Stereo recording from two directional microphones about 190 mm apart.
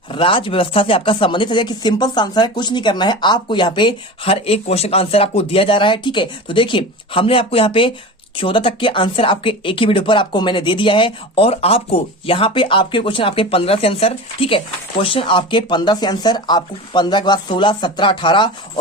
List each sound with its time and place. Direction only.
0.1 s speech: 25° left (ahead or behind)